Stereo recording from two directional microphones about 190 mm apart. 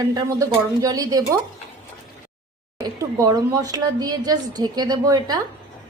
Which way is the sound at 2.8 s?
20° right (ahead or behind).